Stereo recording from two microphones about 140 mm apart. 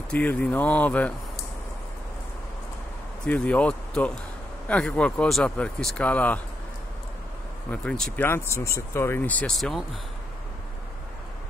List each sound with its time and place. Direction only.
0.1 s speech: 10° left (ahead or behind)
3.3 s speech: 10° left (ahead or behind)
7.7 s speech: 5° left (ahead or behind)
8.3 s speech: 20° left (ahead or behind); by 9.8 s centre (ahead or behind)